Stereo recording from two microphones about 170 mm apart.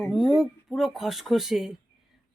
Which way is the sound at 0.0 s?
Centre (ahead or behind).